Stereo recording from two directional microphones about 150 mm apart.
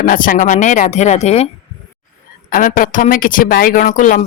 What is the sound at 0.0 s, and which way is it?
Speech, 65° left (ahead or behind).